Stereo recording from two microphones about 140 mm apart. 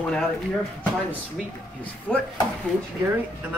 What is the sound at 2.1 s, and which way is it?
Speech, 5° right (ahead or behind).